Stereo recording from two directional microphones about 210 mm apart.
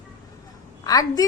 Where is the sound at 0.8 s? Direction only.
15° left (ahead or behind).